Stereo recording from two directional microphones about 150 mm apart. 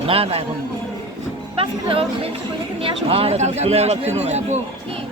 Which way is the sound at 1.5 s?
40° right (ahead or behind).